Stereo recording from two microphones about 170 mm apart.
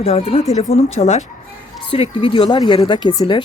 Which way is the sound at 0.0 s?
35° left (ahead or behind).